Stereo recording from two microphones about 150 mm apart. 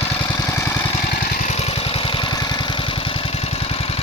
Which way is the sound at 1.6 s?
40° left (ahead or behind).